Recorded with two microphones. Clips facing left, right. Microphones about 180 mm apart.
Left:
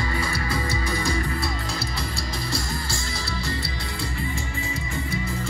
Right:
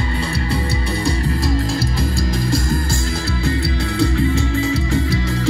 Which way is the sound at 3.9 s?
85° right.